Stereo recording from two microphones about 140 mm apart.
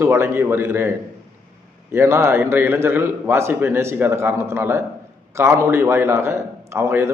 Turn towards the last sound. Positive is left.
turn(degrees=-20)  # may be behind; listen again after turning